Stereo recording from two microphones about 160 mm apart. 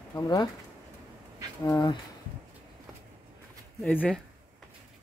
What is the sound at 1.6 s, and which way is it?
Speech, 25° left (ahead or behind).